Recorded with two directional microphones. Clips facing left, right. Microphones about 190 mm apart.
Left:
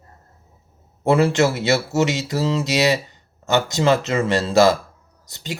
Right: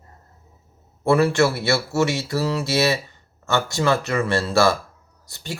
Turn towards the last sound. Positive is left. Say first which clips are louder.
# left 2 dB
turn(degrees=20)  # may be behind; listen again after turning